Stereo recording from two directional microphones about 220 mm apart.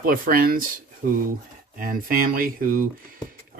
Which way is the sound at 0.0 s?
40° right (ahead or behind).